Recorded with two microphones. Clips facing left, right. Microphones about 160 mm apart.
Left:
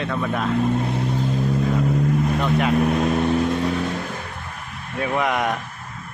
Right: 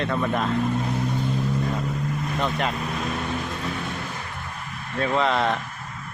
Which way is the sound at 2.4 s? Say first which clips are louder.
Left 1 dB; 5° left (ahead or behind).